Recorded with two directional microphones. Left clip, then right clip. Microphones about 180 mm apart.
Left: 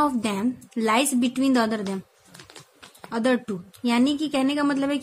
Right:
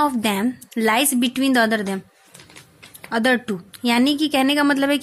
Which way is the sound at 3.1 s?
15° right (ahead or behind).